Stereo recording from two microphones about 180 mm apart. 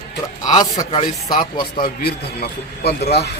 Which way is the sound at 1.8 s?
55° left (ahead or behind).